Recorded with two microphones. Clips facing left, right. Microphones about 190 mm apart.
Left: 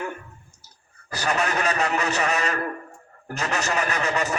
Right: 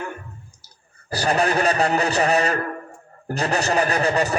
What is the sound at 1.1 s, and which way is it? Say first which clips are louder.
A man's voice: right 5 dB; 35° right (ahead or behind).